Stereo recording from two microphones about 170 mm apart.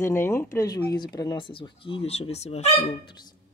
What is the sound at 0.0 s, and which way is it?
Speech, 15° left (ahead or behind).